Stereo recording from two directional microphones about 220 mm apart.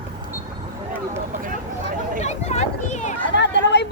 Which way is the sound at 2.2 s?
30° left (ahead or behind).